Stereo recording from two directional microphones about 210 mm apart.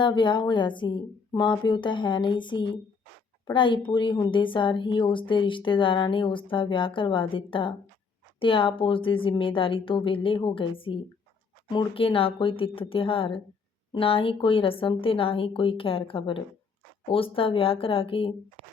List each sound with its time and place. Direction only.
0.0 s a woman's voice: 20° left (ahead or behind)